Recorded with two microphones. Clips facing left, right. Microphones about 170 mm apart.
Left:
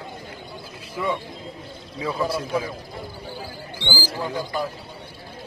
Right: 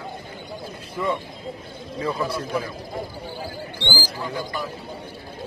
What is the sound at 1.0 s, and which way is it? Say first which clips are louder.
A man's voice: right 1 dB; 5° left (ahead or behind).